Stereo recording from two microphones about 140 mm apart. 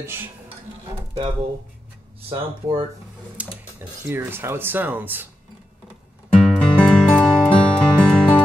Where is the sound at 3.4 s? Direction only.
15° right (ahead or behind).